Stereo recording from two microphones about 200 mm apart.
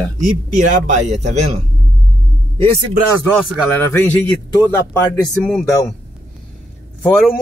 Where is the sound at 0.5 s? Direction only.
40° right (ahead or behind).